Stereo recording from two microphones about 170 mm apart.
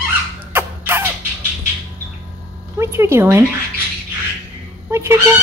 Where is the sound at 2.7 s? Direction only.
15° right (ahead or behind).